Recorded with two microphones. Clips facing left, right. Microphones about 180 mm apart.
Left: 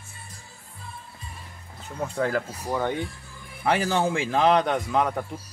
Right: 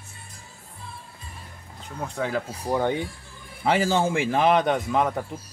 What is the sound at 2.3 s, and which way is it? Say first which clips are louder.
A man's voice: right 1 dB; 15° right (ahead or behind).